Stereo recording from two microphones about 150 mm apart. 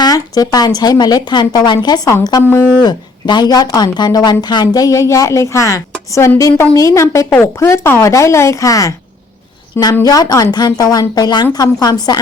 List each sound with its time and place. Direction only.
0.0 s a woman's voice: 25° left (ahead or behind)
2.4 s speech: 15° left (ahead or behind)
2.8 s a woman's voice: 30° left (ahead or behind)